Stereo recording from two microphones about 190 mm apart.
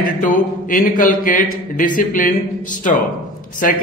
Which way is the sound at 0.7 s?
45° left (ahead or behind).